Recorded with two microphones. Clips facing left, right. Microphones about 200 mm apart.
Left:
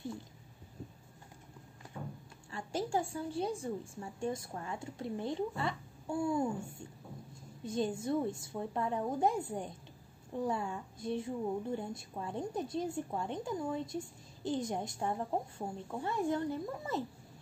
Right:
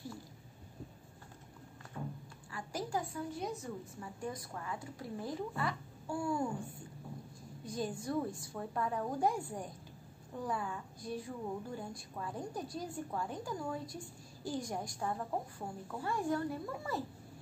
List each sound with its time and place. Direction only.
2.5 s a woman's voice: 25° left (ahead or behind)
7.6 s a woman's voice: 25° left (ahead or behind)